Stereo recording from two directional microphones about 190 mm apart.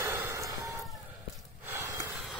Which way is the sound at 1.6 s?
15° right (ahead or behind).